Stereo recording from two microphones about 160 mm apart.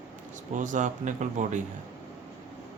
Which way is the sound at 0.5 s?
50° right (ahead or behind).